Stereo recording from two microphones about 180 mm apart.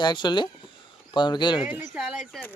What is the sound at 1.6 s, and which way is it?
Speech, 5° right (ahead or behind).